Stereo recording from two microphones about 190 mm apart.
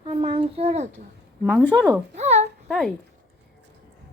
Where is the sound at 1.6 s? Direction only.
10° left (ahead or behind).